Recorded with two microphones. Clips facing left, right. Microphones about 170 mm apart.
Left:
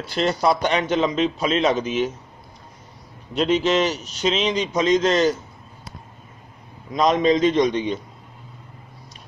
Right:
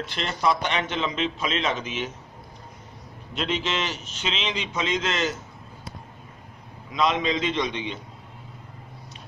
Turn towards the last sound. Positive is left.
turn(degrees=45)  # may be behind; listen again after turning